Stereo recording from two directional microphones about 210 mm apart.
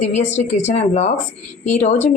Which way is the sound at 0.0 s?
35° left (ahead or behind).